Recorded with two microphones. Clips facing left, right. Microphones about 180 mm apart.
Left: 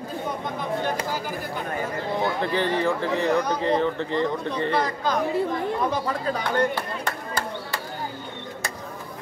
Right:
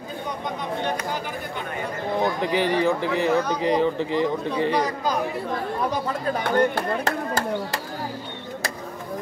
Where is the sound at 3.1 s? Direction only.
Centre (ahead or behind).